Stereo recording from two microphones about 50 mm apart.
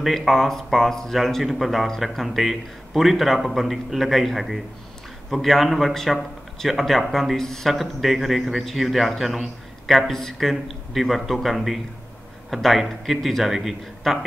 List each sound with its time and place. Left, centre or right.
0.0 s a man's voice: centre